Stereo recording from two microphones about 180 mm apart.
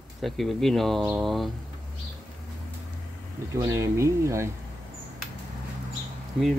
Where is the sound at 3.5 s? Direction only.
20° right (ahead or behind).